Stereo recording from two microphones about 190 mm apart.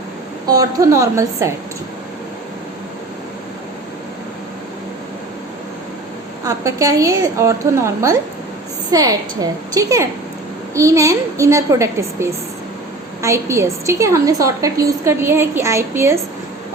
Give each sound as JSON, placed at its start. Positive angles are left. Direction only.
{"t": 0.4, "sound": "a woman's voice", "side_deg": -20}
{"t": 6.4, "sound": "a woman's voice", "side_deg": -15}
{"t": 8.9, "sound": "a woman's voice", "side_deg": -20}